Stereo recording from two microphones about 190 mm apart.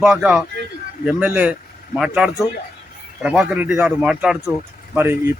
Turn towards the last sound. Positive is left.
turn(degrees=-10)  # may be behind; listen again after turning